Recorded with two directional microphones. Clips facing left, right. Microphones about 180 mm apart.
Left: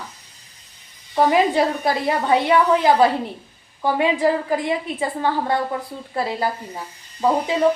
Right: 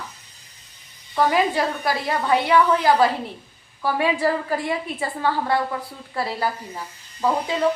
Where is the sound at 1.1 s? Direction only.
20° left (ahead or behind).